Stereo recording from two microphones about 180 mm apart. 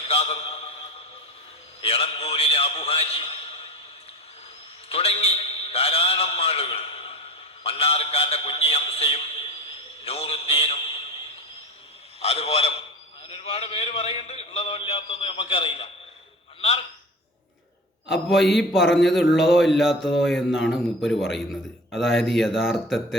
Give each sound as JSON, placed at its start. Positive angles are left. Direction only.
{"t": 0.0, "sound": "a man's voice", "side_deg": 35}
{"t": 1.8, "sound": "a man's voice", "side_deg": 30}
{"t": 4.9, "sound": "a man's voice", "side_deg": 35}
{"t": 12.2, "sound": "a man's voice", "side_deg": 35}
{"t": 18.1, "sound": "a man's voice", "side_deg": 0}